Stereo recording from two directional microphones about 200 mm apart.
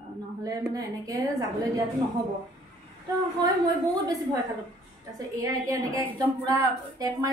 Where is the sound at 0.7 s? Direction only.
20° right (ahead or behind).